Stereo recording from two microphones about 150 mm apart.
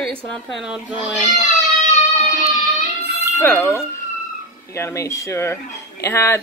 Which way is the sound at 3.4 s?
10° left (ahead or behind).